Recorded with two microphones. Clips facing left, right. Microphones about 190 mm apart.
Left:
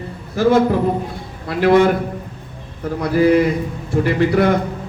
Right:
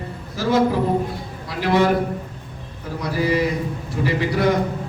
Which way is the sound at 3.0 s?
55° left (ahead or behind).